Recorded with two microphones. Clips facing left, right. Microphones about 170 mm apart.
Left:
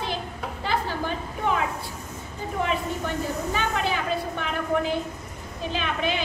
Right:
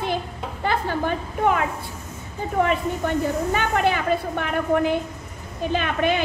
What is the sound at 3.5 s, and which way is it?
Speech, 55° right (ahead or behind).